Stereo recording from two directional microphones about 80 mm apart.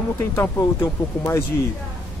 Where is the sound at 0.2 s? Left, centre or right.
Left.